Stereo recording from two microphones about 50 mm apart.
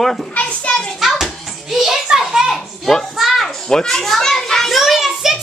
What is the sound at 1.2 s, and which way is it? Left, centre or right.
Hands, centre.